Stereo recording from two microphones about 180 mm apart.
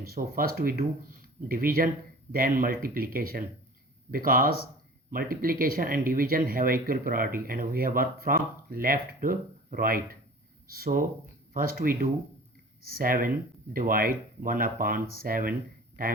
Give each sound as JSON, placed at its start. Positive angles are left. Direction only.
{"t": 0.0, "sound": "speech", "side_deg": -55}